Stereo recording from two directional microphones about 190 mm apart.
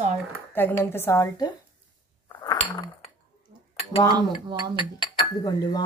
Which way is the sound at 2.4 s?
20° left (ahead or behind).